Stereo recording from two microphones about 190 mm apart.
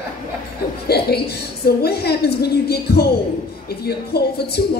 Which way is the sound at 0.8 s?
55° left (ahead or behind).